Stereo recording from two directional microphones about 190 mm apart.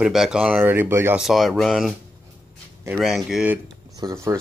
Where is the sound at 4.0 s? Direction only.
15° right (ahead or behind).